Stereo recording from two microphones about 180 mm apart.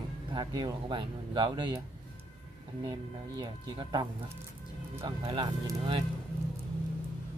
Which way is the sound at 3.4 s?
20° right (ahead or behind).